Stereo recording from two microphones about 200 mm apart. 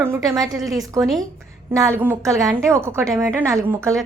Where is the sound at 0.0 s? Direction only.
15° right (ahead or behind).